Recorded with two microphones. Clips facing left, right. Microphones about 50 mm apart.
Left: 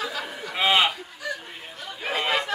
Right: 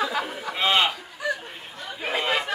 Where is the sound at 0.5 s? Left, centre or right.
Centre.